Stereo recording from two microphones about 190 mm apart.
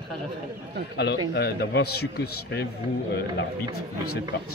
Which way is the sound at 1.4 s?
60° left (ahead or behind).